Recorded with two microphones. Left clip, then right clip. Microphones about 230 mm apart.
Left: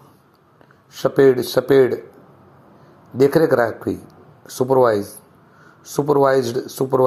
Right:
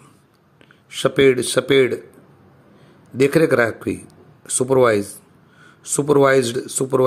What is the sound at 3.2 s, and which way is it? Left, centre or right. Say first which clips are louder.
Speech: left 1 dB; right.